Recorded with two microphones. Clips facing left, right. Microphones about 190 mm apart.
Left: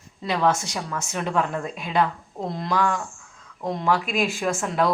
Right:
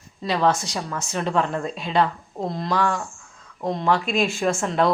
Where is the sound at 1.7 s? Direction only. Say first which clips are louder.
Right 3 dB; 25° right (ahead or behind).